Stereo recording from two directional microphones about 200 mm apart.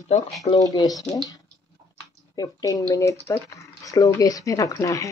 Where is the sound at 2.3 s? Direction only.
20° left (ahead or behind).